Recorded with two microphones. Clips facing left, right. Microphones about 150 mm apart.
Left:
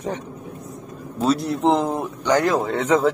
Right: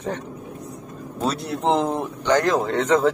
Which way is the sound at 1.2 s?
Centre (ahead or behind).